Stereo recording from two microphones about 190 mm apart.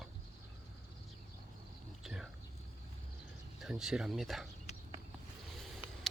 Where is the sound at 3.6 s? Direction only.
5° right (ahead or behind).